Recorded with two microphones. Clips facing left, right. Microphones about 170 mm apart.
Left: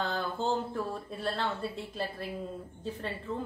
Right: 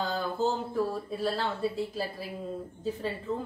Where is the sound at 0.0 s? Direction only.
5° right (ahead or behind).